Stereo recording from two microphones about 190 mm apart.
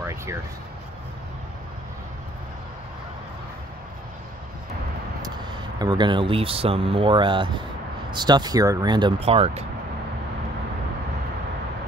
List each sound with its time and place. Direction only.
0.0 s vehicle: 15° right (ahead or behind)
5.2 s speech: 20° right (ahead or behind)